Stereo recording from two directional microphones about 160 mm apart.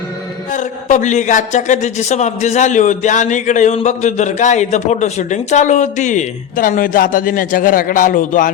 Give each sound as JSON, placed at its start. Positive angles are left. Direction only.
{"t": 0.5, "sound": "speech", "side_deg": 50}